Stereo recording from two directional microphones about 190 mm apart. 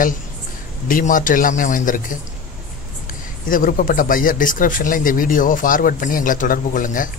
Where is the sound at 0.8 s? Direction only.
45° left (ahead or behind).